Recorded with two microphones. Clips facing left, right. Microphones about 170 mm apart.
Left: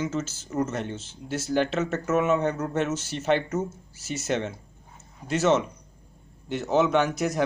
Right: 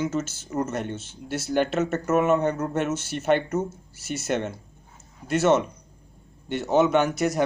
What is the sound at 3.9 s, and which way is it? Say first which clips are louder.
Speech: right 2 dB; centre (ahead or behind).